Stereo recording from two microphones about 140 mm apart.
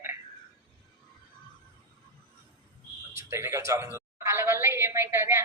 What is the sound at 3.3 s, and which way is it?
A woman's voice, 20° right (ahead or behind).